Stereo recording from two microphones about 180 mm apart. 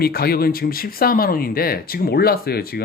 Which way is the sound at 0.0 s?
60° left (ahead or behind).